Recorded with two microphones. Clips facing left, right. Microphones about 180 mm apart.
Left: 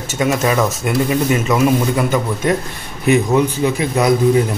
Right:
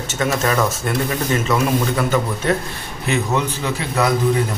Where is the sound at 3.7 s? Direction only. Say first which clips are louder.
Left 4 dB; 15° left (ahead or behind).